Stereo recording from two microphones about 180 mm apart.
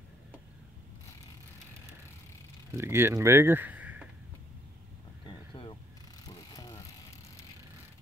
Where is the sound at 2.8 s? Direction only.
15° right (ahead or behind).